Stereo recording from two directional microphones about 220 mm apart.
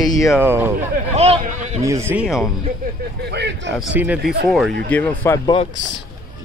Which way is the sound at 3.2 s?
50° right (ahead or behind).